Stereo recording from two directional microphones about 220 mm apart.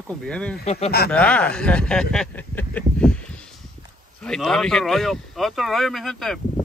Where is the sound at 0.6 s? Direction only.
30° left (ahead or behind).